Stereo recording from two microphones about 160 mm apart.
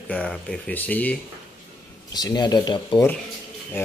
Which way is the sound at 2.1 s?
25° left (ahead or behind).